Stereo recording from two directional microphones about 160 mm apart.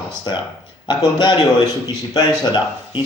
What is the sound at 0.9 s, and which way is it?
Speech, 30° left (ahead or behind).